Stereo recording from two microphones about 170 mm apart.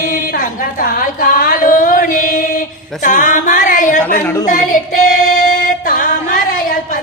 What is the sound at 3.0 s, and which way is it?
Music, 50° left (ahead or behind).